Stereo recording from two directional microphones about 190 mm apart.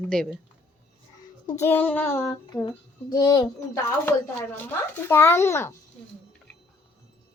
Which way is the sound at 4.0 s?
10° left (ahead or behind).